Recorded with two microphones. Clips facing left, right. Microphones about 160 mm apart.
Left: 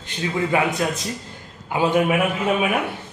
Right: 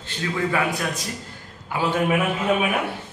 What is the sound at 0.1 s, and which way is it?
A man's voice, 20° left (ahead or behind).